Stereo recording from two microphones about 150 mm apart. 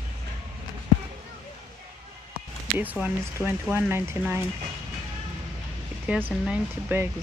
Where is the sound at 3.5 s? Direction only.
15° right (ahead or behind).